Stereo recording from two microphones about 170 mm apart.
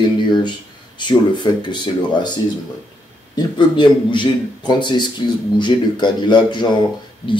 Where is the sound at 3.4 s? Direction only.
25° left (ahead or behind).